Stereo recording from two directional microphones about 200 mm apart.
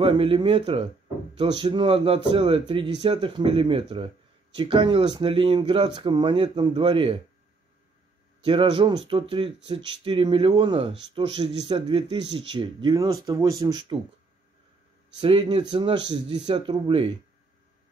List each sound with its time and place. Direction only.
0.0 s speech: 25° right (ahead or behind)
8.5 s speech: 25° right (ahead or behind)
15.1 s speech: 25° right (ahead or behind)